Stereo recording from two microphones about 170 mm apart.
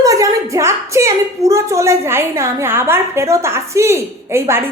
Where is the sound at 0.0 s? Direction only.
20° right (ahead or behind).